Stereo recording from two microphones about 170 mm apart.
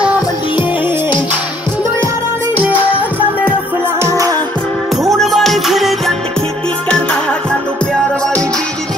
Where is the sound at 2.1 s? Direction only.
15° right (ahead or behind).